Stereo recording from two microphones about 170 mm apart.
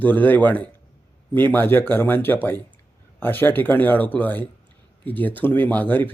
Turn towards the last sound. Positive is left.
turn(degrees=10)  # may be behind; listen again after turning